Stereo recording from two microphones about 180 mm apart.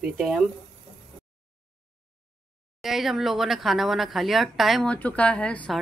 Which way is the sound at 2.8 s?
Centre (ahead or behind).